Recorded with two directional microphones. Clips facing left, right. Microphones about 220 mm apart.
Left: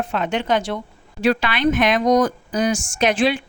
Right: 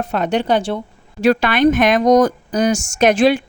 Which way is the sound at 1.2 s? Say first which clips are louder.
Right 5 dB; 45° right (ahead or behind).